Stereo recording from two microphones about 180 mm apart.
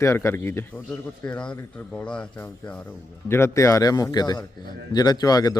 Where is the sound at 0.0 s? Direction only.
15° left (ahead or behind).